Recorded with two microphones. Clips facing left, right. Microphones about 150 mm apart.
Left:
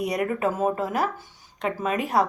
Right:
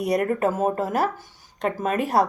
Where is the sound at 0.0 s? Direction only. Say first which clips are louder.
Right 3 dB; 40° right (ahead or behind).